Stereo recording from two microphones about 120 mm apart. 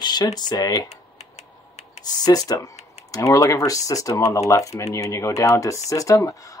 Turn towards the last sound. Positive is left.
turn(degrees=30)  # may be behind; listen again after turning